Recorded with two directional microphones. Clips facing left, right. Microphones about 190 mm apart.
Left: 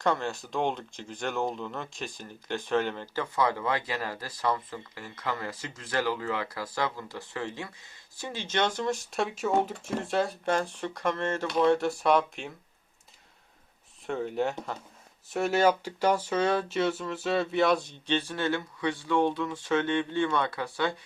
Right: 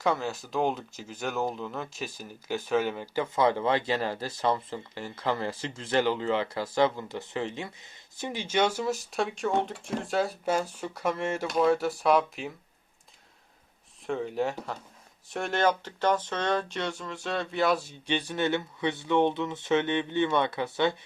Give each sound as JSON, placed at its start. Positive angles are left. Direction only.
{"t": 0.0, "sound": "speech", "side_deg": -5}
{"t": 3.3, "sound": "speech", "side_deg": -25}
{"t": 14.1, "sound": "speech", "side_deg": 0}